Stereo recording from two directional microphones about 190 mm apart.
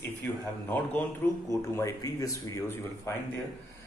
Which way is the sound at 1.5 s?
15° left (ahead or behind).